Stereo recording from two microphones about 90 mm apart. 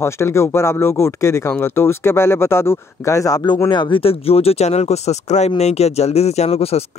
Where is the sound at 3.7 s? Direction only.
65° left (ahead or behind); by 4.5 s 90° left.